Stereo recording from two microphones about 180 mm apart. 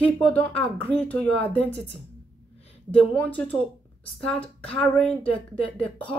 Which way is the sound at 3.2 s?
10° left (ahead or behind).